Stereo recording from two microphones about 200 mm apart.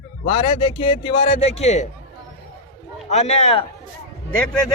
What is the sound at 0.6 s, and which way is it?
Speech, 25° left (ahead or behind).